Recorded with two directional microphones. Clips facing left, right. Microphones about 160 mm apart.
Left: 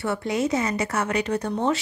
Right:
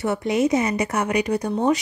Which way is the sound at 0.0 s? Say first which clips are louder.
Right 4 dB; 20° right (ahead or behind).